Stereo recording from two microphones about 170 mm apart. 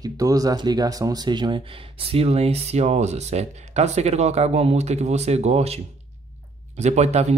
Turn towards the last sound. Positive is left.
turn(degrees=-40)  # may be behind; listen again after turning